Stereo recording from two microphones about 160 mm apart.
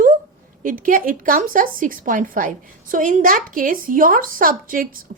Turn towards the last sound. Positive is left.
turn(degrees=-60)  # may be behind; listen again after turning